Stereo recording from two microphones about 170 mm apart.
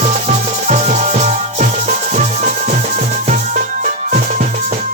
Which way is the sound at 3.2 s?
45° right (ahead or behind).